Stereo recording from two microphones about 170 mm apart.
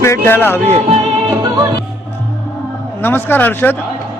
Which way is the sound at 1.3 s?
25° right (ahead or behind).